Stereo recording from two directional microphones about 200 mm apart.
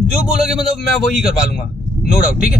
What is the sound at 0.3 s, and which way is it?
A man's voice, 5° right (ahead or behind).